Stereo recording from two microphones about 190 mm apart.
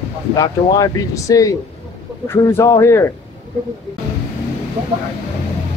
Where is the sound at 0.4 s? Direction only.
20° left (ahead or behind).